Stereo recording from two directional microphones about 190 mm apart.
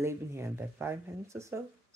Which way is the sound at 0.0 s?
15° right (ahead or behind).